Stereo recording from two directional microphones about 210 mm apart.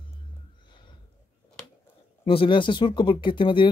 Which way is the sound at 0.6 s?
20° left (ahead or behind).